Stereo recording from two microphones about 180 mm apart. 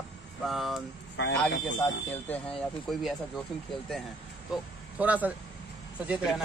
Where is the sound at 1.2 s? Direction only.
90° left.